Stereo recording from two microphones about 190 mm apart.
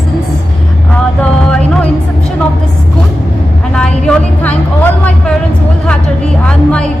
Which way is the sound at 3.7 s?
5° left (ahead or behind).